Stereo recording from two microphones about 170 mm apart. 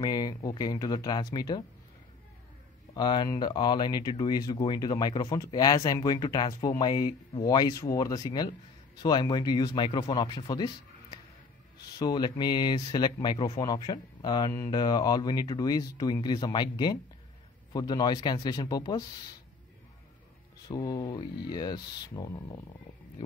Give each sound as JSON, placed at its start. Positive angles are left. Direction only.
{"t": 0.0, "sound": "speech", "side_deg": 25}
{"t": 2.9, "sound": "speech", "side_deg": 25}
{"t": 20.6, "sound": "speech", "side_deg": 25}